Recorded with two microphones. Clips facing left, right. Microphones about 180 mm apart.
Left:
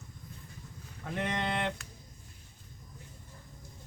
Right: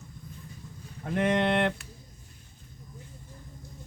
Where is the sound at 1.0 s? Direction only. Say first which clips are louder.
Right 8 dB; 60° right (ahead or behind).